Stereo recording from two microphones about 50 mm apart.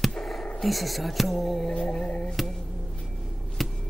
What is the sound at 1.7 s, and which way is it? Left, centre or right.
Music, centre.